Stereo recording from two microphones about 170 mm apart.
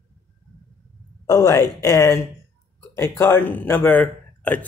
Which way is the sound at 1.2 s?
20° left (ahead or behind).